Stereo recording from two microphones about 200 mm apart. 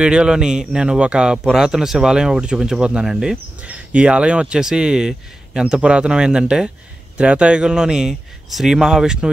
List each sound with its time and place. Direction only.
0.0 s speech: 5° right (ahead or behind)